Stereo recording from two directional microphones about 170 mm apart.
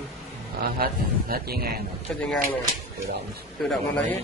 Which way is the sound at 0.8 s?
60° right (ahead or behind).